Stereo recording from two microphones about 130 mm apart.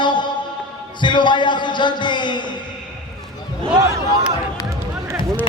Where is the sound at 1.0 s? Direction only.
35° left (ahead or behind).